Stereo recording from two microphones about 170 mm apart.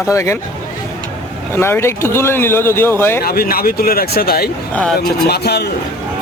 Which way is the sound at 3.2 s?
60° left (ahead or behind).